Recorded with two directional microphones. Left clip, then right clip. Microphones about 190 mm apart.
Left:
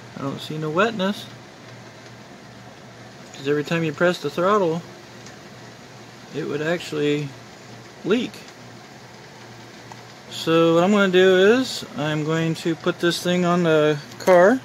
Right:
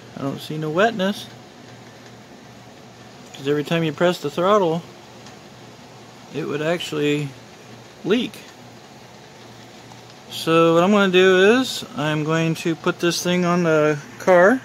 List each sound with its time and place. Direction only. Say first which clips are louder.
0.2 s speech: right 1 dB; 5° right (ahead or behind)
3.4 s speech: right 1 dB; 5° right (ahead or behind)
6.3 s speech: right 1 dB; 5° right (ahead or behind)
10.3 s speech: right 2 dB; 5° right (ahead or behind)